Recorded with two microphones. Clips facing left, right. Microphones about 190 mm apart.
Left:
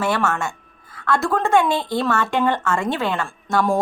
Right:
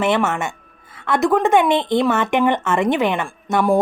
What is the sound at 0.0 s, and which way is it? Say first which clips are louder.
A woman's voice: right 3 dB; 20° right (ahead or behind).